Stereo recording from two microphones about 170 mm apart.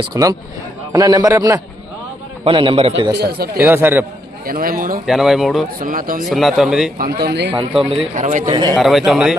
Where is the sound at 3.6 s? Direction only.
10° right (ahead or behind).